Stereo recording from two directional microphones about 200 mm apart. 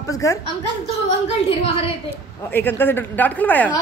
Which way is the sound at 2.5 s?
10° left (ahead or behind).